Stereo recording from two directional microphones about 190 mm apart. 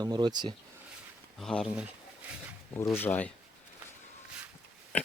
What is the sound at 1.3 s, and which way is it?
Speech, centre (ahead or behind).